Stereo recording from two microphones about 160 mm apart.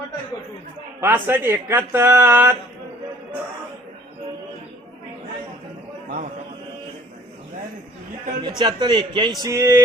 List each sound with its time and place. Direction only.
1.0 s speech: 15° right (ahead or behind)
8.4 s speech: 30° right (ahead or behind)